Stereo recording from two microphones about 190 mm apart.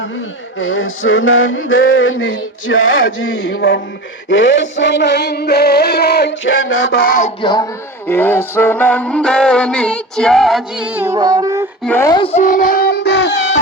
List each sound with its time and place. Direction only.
0.6 s male singing: 90° left
4.3 s music: 70° left (ahead or behind); by 7.3 s 40° left (ahead or behind)
7.4 s speech: 20° left (ahead or behind)
8.0 s music: 10° left (ahead or behind); by 11.7 s 15° right (ahead or behind)
11.9 s speech: 10° left (ahead or behind)
12.1 s child singing: 30° left (ahead or behind); by 13.6 s 65° left (ahead or behind)